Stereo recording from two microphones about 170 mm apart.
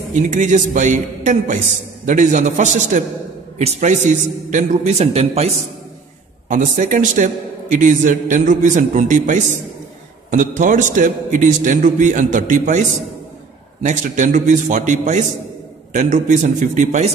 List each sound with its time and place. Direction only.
0.1 s a man's voice: 45° right (ahead or behind)
6.5 s a man's voice: 50° right (ahead or behind)
13.8 s a man's voice: 45° right (ahead or behind)